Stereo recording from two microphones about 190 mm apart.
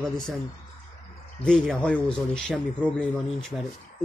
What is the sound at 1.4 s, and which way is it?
Speech, 5° left (ahead or behind).